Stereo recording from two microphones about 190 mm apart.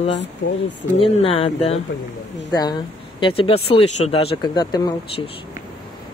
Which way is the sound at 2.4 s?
20° left (ahead or behind).